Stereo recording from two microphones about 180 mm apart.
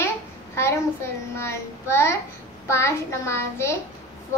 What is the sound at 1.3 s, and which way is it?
A child's voice, 15° left (ahead or behind).